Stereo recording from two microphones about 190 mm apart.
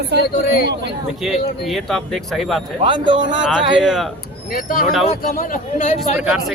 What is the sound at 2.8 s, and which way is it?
Speech, 25° right (ahead or behind).